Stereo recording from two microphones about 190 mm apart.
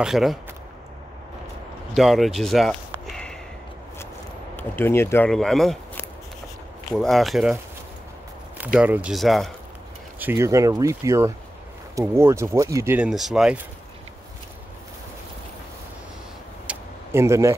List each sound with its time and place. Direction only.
0.0 s speech: centre (ahead or behind)
2.0 s speech: centre (ahead or behind)
4.6 s speech: 10° left (ahead or behind)
6.9 s speech: centre (ahead or behind)
8.7 s speech: 10° right (ahead or behind)
10.1 s speech: 10° right (ahead or behind)
16.6 s vehicle: 15° right (ahead or behind)